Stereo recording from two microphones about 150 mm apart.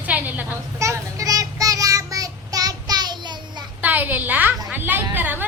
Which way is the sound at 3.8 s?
10° right (ahead or behind).